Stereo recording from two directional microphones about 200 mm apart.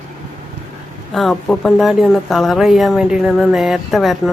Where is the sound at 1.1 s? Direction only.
Centre (ahead or behind).